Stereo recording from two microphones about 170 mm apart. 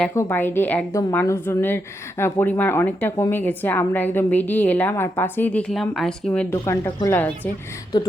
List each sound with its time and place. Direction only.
0.2 s a woman's voice: 10° left (ahead or behind)
7.9 s speech: 25° left (ahead or behind)